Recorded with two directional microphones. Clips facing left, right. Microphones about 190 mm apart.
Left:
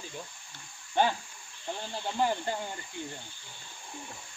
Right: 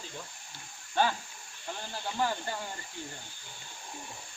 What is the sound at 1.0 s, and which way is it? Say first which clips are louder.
Speech: left 2 dB; 20° left (ahead or behind).